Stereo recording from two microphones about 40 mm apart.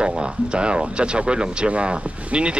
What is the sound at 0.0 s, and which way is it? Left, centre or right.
Speech, right.